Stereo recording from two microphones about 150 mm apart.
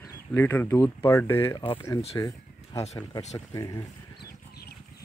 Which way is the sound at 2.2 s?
20° left (ahead or behind).